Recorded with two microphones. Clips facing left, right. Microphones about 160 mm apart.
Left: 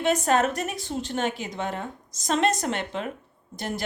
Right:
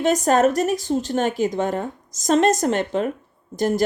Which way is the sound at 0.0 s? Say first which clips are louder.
Right 5 dB; 40° right (ahead or behind).